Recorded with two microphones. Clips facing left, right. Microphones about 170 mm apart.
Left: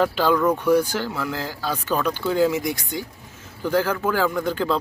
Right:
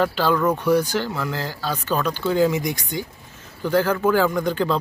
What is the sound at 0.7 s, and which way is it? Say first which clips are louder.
Speech: even; 10° left (ahead or behind).